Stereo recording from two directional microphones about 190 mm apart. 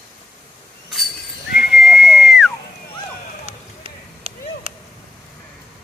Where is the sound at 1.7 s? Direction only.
Centre (ahead or behind).